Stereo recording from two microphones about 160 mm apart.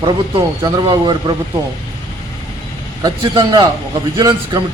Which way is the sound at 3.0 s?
25° right (ahead or behind).